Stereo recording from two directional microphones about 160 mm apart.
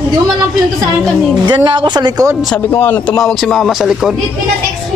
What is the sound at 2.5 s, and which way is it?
Speech, 10° left (ahead or behind).